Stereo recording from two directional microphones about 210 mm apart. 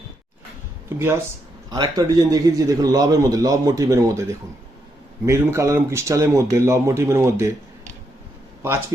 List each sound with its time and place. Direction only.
0.9 s a man's voice: 10° right (ahead or behind)